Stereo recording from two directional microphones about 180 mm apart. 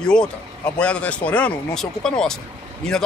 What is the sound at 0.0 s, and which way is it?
Speech, 5° left (ahead or behind).